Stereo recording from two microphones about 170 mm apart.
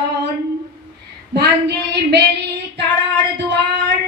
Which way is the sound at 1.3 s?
80° right.